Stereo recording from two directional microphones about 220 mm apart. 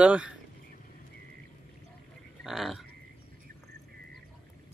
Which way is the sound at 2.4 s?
Centre (ahead or behind).